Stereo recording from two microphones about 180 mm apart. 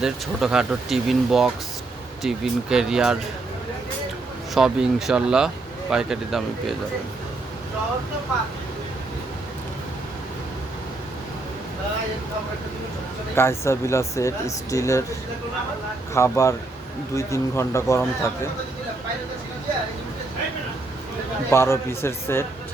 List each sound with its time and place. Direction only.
0.0 s speech: centre (ahead or behind)
4.5 s speech: 5° right (ahead or behind)
13.3 s speech: 15° left (ahead or behind)
16.1 s speech: 15° left (ahead or behind)
21.5 s speech: 15° left (ahead or behind)